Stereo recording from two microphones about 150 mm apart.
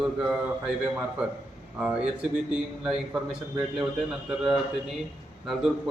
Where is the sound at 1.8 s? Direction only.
5° right (ahead or behind).